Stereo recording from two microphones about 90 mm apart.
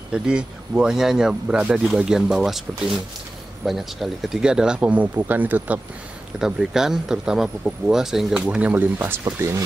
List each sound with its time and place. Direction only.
0.1 s speech: 10° right (ahead or behind)
6.4 s speech: 5° right (ahead or behind); by 9.2 s 25° right (ahead or behind)
9.2 s speech: 35° right (ahead or behind)